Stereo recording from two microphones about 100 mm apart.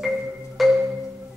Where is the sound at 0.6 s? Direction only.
Centre (ahead or behind).